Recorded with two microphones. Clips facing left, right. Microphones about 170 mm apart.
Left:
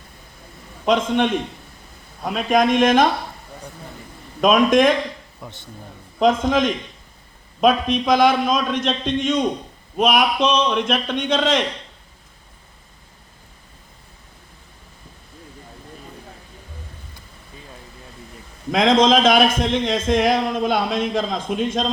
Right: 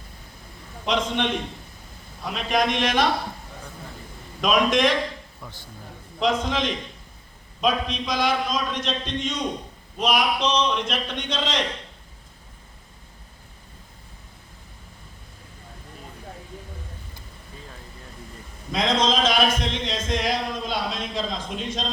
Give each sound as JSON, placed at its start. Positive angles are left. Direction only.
{"t": 0.9, "sound": "speech", "side_deg": 50}
{"t": 4.4, "sound": "speech", "side_deg": 50}
{"t": 5.4, "sound": "speech", "side_deg": 20}
{"t": 6.1, "sound": "a man's voice", "side_deg": 50}
{"t": 18.7, "sound": "speech", "side_deg": 50}